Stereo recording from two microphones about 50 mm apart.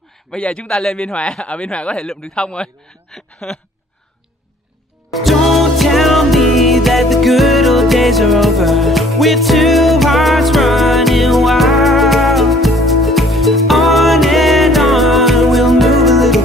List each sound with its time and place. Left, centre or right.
0.4 s speech: left
2.0 s a man's voice: centre
2.3 s a sound: centre
5.1 s music: centre